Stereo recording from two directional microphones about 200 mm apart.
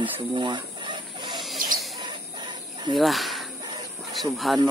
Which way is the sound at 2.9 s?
Centre (ahead or behind).